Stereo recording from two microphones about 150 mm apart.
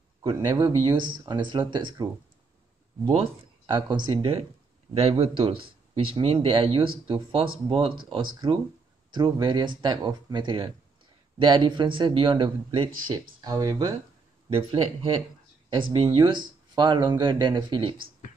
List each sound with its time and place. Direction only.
0.2 s speech: 30° right (ahead or behind)
3.1 s speech: 35° right (ahead or behind)
14.5 s speech: 35° right (ahead or behind)